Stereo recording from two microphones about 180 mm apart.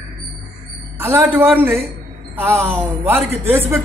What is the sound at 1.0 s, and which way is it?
Speech, 15° right (ahead or behind).